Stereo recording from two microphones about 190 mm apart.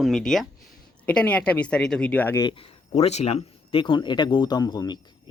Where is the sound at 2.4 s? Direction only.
25° left (ahead or behind).